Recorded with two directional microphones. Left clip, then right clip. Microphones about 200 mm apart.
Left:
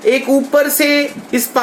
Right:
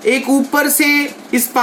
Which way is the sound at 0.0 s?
50° right (ahead or behind).